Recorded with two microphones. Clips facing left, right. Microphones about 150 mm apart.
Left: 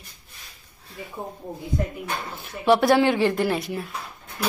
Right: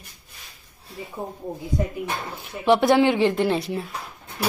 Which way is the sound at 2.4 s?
20° right (ahead or behind).